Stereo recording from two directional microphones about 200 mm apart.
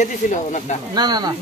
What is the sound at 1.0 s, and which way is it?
Speech, 20° right (ahead or behind).